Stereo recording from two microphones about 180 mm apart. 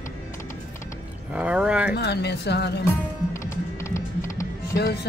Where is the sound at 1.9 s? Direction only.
65° left (ahead or behind).